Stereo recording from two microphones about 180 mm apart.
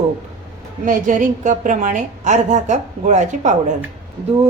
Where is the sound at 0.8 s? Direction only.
45° right (ahead or behind).